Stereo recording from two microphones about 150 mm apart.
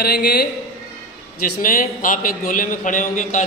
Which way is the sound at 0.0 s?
90° left.